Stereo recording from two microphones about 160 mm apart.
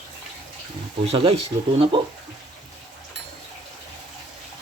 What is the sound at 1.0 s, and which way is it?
Speech, 40° right (ahead or behind).